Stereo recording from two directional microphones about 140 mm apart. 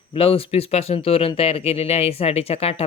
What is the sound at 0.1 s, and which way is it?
Speech, 40° left (ahead or behind).